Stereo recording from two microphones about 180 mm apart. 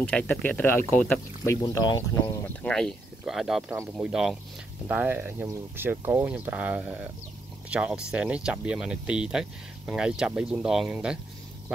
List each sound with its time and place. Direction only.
0.0 s speech: 10° left (ahead or behind)
2.6 s speech: 5° left (ahead or behind)